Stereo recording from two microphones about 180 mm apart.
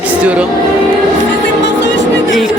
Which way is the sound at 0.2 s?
5° right (ahead or behind).